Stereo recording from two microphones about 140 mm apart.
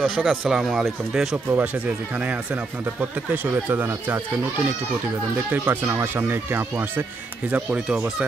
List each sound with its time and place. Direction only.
0.0 s speech: 5° left (ahead or behind); by 4.2 s 15° right (ahead or behind)
5.5 s speech: 15° right (ahead or behind)